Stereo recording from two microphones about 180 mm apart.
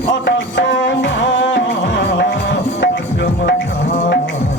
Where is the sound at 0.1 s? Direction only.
85° left.